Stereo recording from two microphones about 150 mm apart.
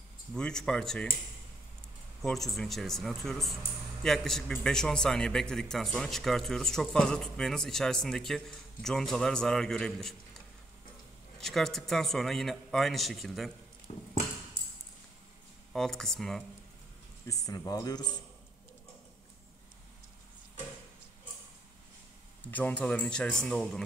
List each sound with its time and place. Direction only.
0.3 s a man's voice: 5° left (ahead or behind)
2.2 s a man's voice: centre (ahead or behind)
11.3 s a man's voice: centre (ahead or behind)
13.9 s a sound: 50° left (ahead or behind)
15.7 s a man's voice: 5° left (ahead or behind)
17.3 s a man's voice: 20° left (ahead or behind)
22.5 s speech: 10° left (ahead or behind)